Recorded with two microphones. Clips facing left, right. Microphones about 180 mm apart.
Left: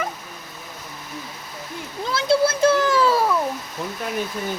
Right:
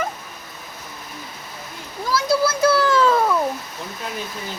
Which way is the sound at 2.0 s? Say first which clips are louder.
Left 1 dB; 25° left (ahead or behind).